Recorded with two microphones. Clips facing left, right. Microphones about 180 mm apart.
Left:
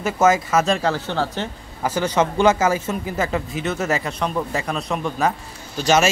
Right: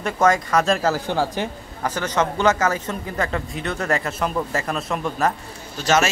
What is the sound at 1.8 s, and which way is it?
A man's voice, 10° left (ahead or behind).